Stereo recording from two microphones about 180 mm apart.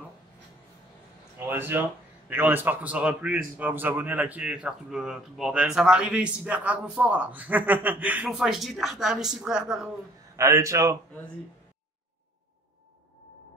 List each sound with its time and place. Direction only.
1.5 s a man's voice: 10° right (ahead or behind)
10.3 s a man's voice: 15° right (ahead or behind)